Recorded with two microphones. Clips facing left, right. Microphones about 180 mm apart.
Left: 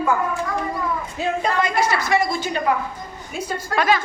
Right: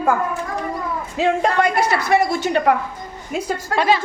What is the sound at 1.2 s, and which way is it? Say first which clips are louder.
A woman's voice: right 5 dB; 85° right.